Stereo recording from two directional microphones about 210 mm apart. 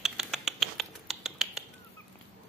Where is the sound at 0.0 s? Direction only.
Centre (ahead or behind).